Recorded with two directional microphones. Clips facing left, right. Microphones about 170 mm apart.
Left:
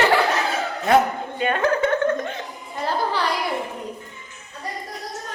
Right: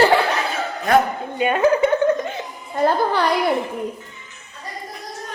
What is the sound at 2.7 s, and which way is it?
Speech, 55° right (ahead or behind).